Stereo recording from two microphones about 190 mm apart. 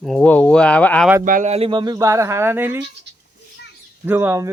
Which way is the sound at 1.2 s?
45° right (ahead or behind).